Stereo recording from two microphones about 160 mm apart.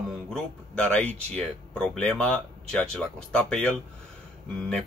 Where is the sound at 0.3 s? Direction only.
5° left (ahead or behind).